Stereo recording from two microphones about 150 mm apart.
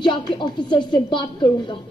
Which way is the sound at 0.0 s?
30° left (ahead or behind).